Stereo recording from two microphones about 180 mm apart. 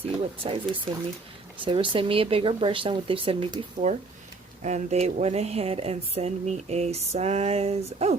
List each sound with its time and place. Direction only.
0.4 s speech: 30° right (ahead or behind)